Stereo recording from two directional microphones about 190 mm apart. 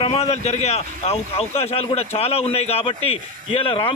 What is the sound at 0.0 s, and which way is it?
Speech, 30° left (ahead or behind).